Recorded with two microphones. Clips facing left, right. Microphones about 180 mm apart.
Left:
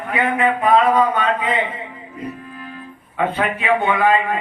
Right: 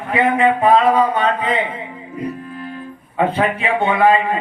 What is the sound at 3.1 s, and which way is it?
Speech, 30° right (ahead or behind).